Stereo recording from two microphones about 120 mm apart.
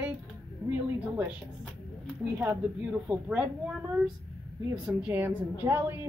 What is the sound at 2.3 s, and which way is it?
A woman's voice, 10° right (ahead or behind).